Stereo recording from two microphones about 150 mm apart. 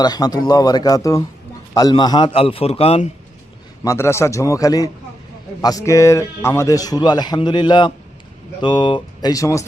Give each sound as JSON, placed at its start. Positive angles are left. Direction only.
{"t": 0.0, "sound": "a man's voice", "side_deg": 25}
{"t": 3.8, "sound": "speech", "side_deg": 20}